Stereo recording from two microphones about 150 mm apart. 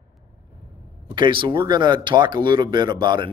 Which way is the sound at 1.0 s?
35° right (ahead or behind).